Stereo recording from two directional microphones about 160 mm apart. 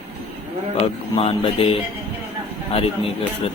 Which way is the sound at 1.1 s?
35° left (ahead or behind).